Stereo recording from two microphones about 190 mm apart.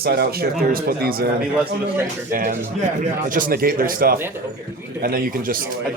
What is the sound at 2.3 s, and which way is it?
Speech, 45° right (ahead or behind).